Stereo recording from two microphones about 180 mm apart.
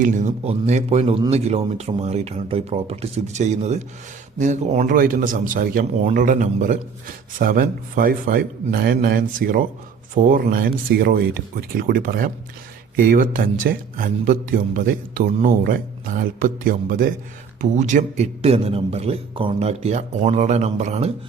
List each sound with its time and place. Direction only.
0.0 s a man's voice: 40° right (ahead or behind)